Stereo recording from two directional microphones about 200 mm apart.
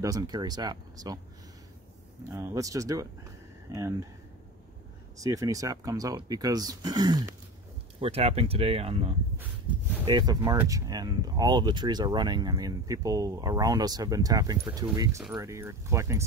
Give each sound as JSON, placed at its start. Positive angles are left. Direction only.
{"t": 0.0, "sound": "speech", "side_deg": -20}
{"t": 2.3, "sound": "speech", "side_deg": -15}
{"t": 5.2, "sound": "speech", "side_deg": -15}
{"t": 8.0, "sound": "speech", "side_deg": -30}
{"t": 10.0, "sound": "speech", "side_deg": -20}